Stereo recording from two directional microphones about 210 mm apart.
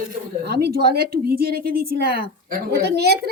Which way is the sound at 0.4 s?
50° right (ahead or behind).